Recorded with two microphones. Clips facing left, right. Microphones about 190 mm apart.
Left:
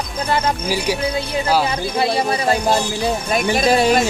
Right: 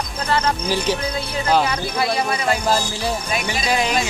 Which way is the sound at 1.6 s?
25° left (ahead or behind).